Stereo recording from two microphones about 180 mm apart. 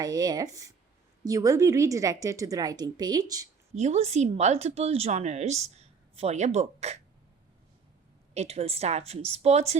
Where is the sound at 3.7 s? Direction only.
35° right (ahead or behind).